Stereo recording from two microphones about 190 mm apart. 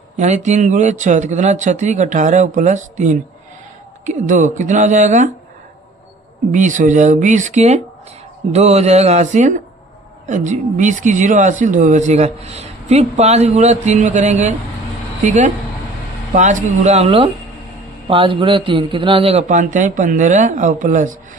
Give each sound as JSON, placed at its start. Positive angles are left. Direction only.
{"t": 0.2, "sound": "speech", "side_deg": -40}
{"t": 6.5, "sound": "speech", "side_deg": -40}